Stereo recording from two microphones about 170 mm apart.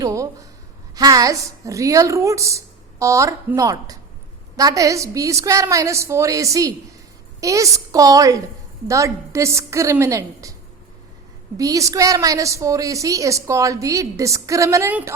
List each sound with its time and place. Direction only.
0.0 s a woman's voice: 20° right (ahead or behind)
11.5 s a woman's voice: 20° right (ahead or behind)